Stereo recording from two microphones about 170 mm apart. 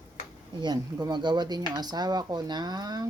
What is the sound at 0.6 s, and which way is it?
Speech, 25° right (ahead or behind).